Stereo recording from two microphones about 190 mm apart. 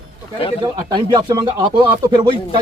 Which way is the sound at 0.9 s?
20° right (ahead or behind).